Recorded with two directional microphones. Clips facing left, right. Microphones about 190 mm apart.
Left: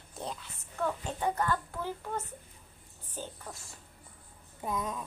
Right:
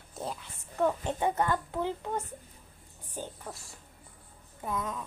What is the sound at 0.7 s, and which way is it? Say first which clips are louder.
A child's voice: right 5 dB; 20° right (ahead or behind).